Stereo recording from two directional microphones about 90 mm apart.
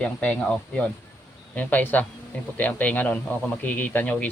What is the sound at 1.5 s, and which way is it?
Speech, 15° left (ahead or behind).